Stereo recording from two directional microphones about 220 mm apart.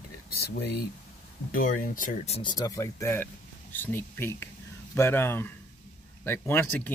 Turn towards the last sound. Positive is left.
turn(degrees=10)  # may be behind; listen again after turning